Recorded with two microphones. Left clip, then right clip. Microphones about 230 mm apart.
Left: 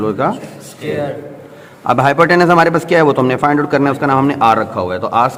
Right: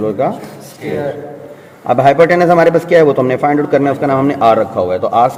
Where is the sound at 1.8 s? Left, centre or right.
Left.